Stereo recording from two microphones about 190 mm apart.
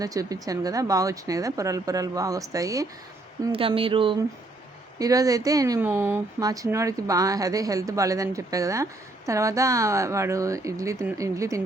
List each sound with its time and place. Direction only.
0.0 s speech: 20° right (ahead or behind)
3.5 s speech: 30° right (ahead or behind)